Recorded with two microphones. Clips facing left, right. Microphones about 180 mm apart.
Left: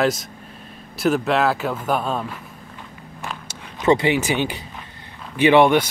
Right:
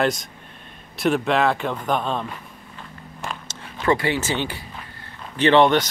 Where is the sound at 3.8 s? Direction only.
20° left (ahead or behind).